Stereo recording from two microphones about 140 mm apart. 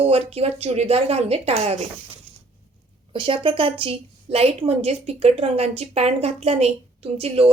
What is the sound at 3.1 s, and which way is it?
A woman's voice, 40° right (ahead or behind).